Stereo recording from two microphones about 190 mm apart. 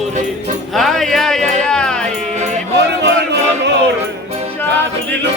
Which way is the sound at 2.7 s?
65° right (ahead or behind).